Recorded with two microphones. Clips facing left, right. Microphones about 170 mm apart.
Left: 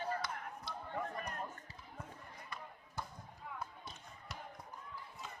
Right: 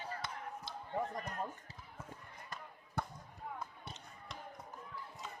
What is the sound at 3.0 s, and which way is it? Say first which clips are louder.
Basketball bounce: right 5 dB; 65° right (ahead or behind).